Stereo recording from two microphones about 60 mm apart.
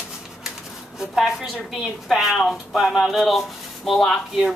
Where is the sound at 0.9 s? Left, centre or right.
Centre.